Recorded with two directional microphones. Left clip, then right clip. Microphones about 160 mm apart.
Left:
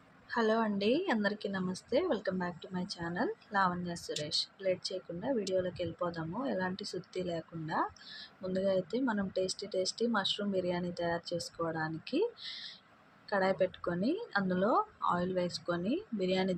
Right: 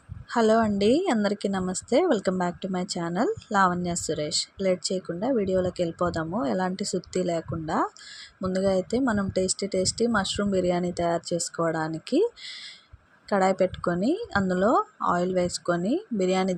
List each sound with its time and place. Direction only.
0.3 s a woman's voice: 50° right (ahead or behind)